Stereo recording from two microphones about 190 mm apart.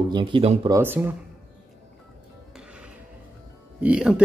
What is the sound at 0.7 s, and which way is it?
Speech, 10° right (ahead or behind).